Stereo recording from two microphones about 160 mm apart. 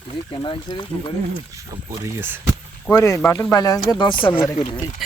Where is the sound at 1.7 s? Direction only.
15° right (ahead or behind).